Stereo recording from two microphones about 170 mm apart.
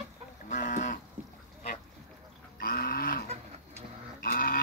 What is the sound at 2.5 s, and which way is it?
Livestock, 60° left (ahead or behind).